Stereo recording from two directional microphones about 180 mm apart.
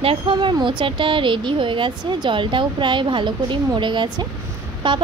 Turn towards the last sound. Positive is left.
turn(degrees=-25)  # may be behind; listen again after turning